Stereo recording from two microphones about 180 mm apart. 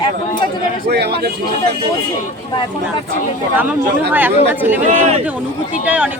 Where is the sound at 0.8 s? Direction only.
65° right (ahead or behind).